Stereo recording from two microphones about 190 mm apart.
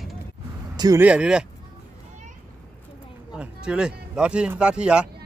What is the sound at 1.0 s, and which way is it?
Speech, 5° right (ahead or behind).